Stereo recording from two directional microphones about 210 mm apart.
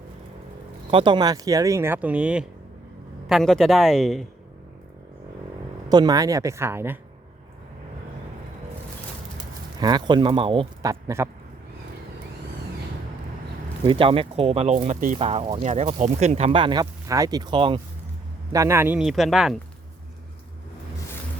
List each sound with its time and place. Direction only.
0.9 s speech: 25° right (ahead or behind); by 4.3 s centre (ahead or behind)
5.9 s speech: 20° right (ahead or behind)
9.8 s speech: 20° right (ahead or behind)
13.8 s speech: 25° right (ahead or behind)
15.7 s speech: 35° right (ahead or behind); by 19.5 s centre (ahead or behind)